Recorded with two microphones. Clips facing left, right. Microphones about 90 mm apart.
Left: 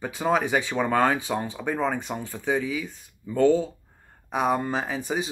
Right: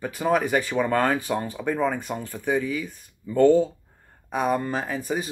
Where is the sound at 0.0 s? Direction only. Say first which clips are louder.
Right 1 dB; 15° left (ahead or behind).